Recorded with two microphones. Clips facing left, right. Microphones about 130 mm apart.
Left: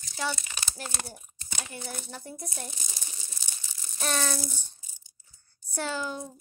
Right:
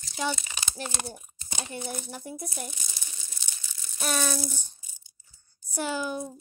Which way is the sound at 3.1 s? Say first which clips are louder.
Left 1 dB; 35° left (ahead or behind).